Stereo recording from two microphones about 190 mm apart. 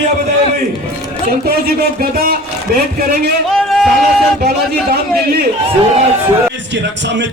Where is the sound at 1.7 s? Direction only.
50° right (ahead or behind).